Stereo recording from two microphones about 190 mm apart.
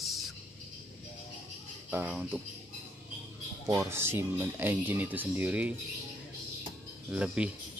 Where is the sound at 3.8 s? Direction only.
15° right (ahead or behind).